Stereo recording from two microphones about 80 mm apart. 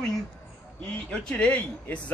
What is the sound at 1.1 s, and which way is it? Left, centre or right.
Speech, centre.